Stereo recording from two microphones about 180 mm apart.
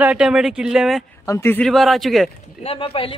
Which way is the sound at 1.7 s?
Centre (ahead or behind).